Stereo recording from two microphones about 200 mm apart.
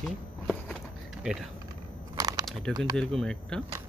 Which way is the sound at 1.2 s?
Centre (ahead or behind).